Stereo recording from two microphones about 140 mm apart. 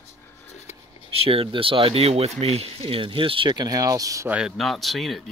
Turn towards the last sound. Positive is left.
turn(degrees=0)  # may be behind; listen again after turning